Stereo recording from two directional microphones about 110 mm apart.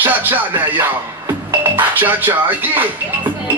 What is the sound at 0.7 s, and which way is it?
Speech, 15° right (ahead or behind).